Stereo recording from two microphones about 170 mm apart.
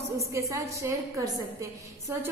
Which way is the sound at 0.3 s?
15° right (ahead or behind).